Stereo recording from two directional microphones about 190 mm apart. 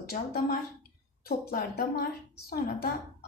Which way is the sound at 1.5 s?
55° left (ahead or behind).